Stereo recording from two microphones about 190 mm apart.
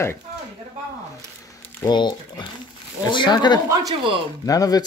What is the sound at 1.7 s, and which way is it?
Speech, 20° left (ahead or behind).